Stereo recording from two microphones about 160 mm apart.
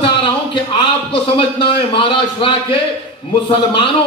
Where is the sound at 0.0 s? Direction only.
30° left (ahead or behind).